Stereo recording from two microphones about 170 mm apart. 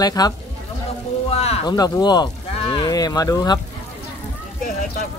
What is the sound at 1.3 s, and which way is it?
Speech, 40° left (ahead or behind).